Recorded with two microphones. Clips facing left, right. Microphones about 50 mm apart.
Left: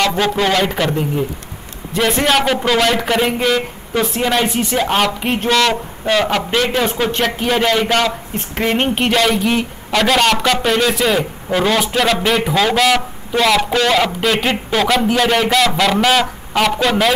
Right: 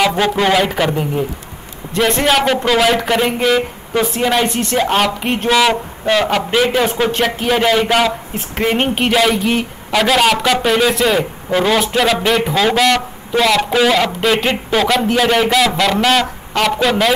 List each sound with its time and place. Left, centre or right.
0.0 s a man's voice: centre